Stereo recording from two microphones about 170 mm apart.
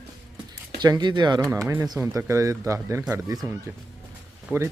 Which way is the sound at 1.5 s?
15° right (ahead or behind).